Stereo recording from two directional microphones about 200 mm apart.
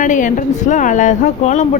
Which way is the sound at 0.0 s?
40° left (ahead or behind).